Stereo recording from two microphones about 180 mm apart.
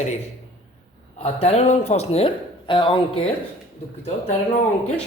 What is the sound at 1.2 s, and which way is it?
Speech, 40° left (ahead or behind).